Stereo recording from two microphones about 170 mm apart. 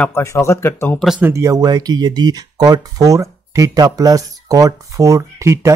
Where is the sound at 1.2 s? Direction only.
15° right (ahead or behind).